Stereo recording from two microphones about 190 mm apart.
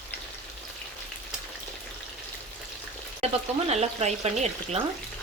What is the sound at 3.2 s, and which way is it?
Speech, 35° right (ahead or behind).